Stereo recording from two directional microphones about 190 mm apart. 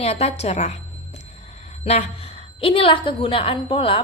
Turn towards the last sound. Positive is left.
turn(degrees=30)  # may be behind; listen again after turning